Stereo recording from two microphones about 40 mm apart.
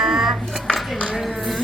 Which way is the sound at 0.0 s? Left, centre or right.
Centre.